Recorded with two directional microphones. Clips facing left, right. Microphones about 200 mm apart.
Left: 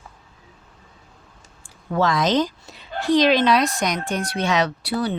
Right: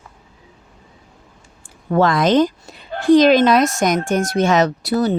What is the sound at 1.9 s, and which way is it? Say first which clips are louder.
A woman's voice: right 5 dB; 55° right (ahead or behind).